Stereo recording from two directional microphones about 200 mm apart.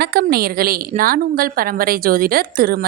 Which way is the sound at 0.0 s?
50° right (ahead or behind).